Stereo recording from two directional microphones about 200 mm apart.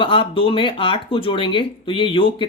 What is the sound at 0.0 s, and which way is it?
Speech, 25° left (ahead or behind).